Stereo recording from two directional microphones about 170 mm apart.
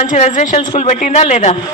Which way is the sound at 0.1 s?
45° left (ahead or behind).